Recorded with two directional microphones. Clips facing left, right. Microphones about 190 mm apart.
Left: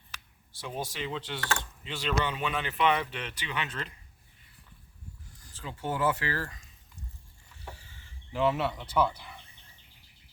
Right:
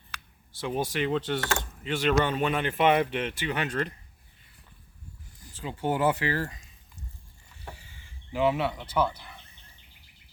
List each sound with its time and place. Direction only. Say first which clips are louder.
0.6 s speech: right 7 dB; 60° right (ahead or behind); by 3.8 s 45° right (ahead or behind)
5.4 s a sound: right 5 dB; 10° right (ahead or behind)
5.6 s speech: right 4 dB; 20° right (ahead or behind)
7.7 s chicken: right 2 dB; 15° right (ahead or behind)